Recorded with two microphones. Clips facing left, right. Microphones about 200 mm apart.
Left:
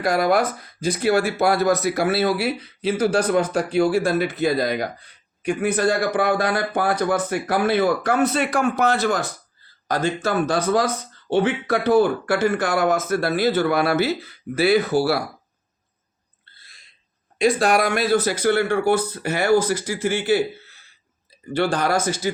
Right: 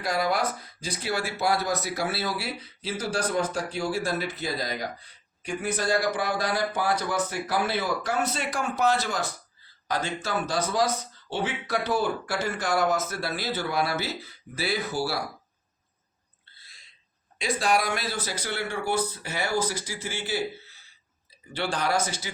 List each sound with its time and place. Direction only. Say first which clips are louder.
0.0 s speech: left 7 dB; 55° left (ahead or behind)
17.4 s speech: left 7 dB; 70° left (ahead or behind)
21.5 s speech: left 7 dB; 45° left (ahead or behind)